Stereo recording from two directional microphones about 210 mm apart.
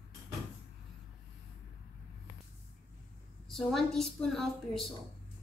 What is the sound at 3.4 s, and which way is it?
A woman's voice, centre (ahead or behind).